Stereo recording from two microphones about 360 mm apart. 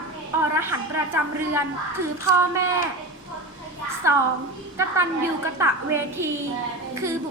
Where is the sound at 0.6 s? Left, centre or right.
Centre.